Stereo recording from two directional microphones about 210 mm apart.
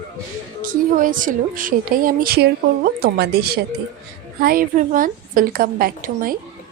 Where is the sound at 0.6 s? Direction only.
40° right (ahead or behind).